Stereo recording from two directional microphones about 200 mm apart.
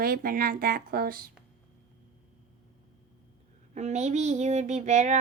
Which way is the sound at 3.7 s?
35° right (ahead or behind).